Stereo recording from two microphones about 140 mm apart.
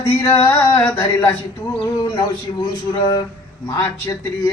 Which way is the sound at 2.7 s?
30° left (ahead or behind).